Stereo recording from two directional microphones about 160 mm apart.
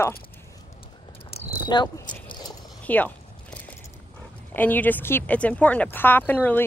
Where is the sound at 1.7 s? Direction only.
25° left (ahead or behind).